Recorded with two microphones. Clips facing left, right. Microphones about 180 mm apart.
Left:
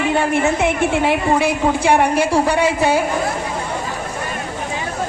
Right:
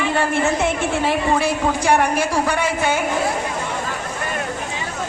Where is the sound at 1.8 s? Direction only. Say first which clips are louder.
Left 2 dB; 30° left (ahead or behind).